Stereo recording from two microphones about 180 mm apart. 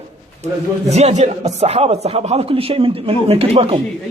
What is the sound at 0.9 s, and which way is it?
A man's voice, 40° right (ahead or behind).